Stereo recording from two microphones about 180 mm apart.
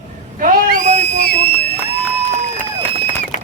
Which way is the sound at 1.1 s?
65° left (ahead or behind).